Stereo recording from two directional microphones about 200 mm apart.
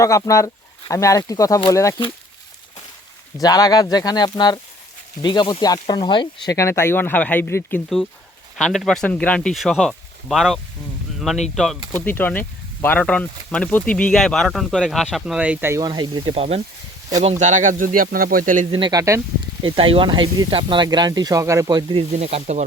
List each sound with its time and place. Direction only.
0.0 s speech: 15° left (ahead or behind)
3.4 s speech: 20° left (ahead or behind); by 18.6 s 45° right (ahead or behind)
18.7 s speech: 20° right (ahead or behind)
22.2 s speech: 35° right (ahead or behind)